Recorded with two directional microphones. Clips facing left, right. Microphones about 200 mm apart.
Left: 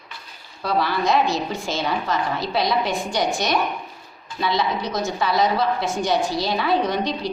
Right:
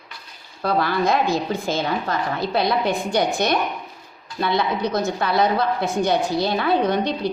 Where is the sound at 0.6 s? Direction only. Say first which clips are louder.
Right 2 dB; 50° right (ahead or behind).